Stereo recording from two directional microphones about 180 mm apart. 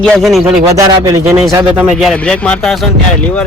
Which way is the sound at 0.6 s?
15° right (ahead or behind).